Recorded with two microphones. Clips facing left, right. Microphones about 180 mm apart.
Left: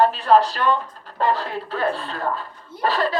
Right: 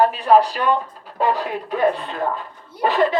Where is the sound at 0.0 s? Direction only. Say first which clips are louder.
Right 1 dB; 10° right (ahead or behind).